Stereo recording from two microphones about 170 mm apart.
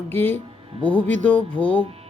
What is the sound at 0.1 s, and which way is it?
Speech, 10° left (ahead or behind).